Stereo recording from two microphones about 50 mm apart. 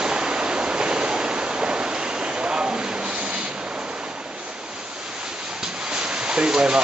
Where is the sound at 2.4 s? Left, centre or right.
Right.